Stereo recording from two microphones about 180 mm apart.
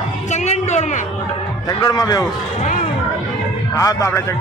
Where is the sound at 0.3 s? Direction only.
40° left (ahead or behind).